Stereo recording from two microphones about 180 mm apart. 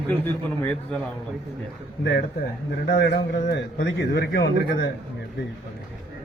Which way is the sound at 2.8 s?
70° left (ahead or behind).